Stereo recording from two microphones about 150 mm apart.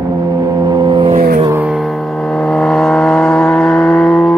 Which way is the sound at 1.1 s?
75° right (ahead or behind).